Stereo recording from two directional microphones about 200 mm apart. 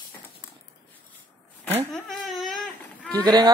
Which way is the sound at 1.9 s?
Centre (ahead or behind).